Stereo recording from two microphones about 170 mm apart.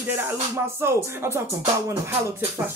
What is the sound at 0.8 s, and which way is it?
Speech, 15° right (ahead or behind).